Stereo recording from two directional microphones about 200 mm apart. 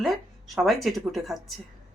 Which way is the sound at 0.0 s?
Centre (ahead or behind).